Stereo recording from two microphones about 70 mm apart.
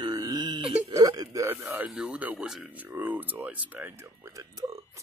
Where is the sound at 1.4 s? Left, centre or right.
Right.